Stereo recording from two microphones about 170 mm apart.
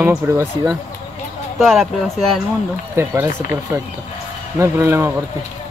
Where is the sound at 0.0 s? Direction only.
10° right (ahead or behind).